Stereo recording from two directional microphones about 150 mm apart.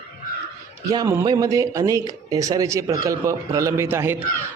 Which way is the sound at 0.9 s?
25° right (ahead or behind).